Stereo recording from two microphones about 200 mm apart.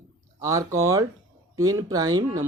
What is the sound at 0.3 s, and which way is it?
Speech, 15° right (ahead or behind).